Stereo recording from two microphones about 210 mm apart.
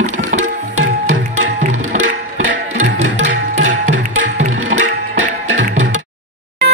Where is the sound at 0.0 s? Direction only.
35° right (ahead or behind).